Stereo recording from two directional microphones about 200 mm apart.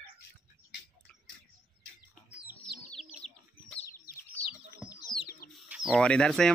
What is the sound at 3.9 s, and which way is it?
Bird, 45° left (ahead or behind).